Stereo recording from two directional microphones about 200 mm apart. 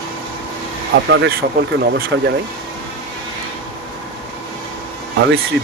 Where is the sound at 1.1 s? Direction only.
55° right (ahead or behind).